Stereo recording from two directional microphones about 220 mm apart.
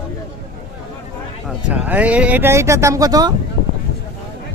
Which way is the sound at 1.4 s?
5° right (ahead or behind).